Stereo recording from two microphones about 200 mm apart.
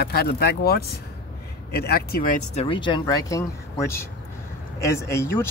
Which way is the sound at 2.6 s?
25° left (ahead or behind).